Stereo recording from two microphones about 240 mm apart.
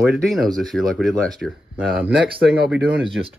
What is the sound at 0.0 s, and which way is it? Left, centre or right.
Speech, centre.